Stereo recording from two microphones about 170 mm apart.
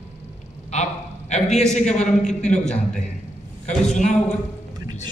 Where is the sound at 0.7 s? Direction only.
40° left (ahead or behind).